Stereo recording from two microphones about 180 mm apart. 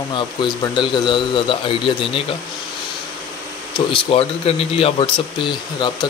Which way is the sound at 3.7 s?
30° left (ahead or behind).